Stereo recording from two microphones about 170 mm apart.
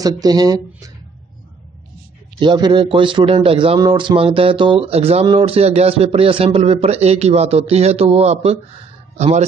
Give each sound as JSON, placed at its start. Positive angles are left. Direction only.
{"t": 0.0, "sound": "speech", "side_deg": -25}
{"t": 2.4, "sound": "speech", "side_deg": -25}